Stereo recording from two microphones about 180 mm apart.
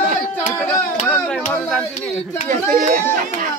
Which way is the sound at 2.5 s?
45° right (ahead or behind).